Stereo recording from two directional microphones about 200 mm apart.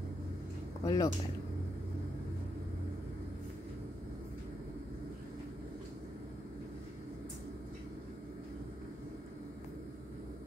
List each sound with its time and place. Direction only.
0.8 s speech: 20° left (ahead or behind)